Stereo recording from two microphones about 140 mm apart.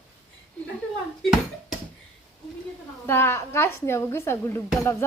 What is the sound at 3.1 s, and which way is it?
Speech, 15° left (ahead or behind).